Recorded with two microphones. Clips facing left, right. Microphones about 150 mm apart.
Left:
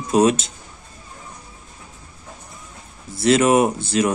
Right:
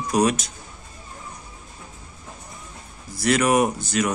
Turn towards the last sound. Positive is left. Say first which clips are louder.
# left 3 dB
turn(degrees=30)  # may be behind; listen again after turning